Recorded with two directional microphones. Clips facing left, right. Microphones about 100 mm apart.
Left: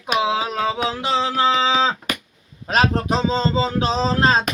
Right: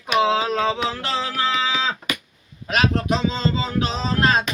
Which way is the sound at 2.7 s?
35° left (ahead or behind).